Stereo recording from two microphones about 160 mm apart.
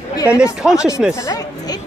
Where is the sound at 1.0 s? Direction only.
5° right (ahead or behind).